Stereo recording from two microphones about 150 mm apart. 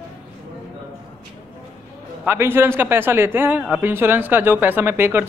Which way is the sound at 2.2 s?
15° right (ahead or behind).